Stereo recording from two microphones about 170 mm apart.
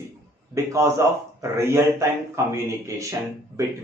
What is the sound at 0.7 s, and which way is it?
A man's voice, 15° right (ahead or behind).